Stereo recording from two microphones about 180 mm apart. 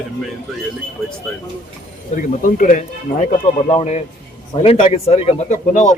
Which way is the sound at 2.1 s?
45° left (ahead or behind).